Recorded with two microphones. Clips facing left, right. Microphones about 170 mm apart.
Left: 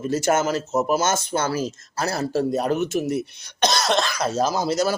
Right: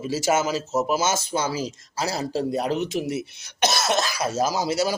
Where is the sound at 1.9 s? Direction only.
60° left (ahead or behind).